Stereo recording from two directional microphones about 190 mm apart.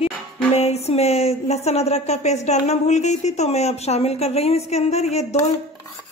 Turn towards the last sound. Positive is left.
turn(degrees=35)  # may be behind; listen again after turning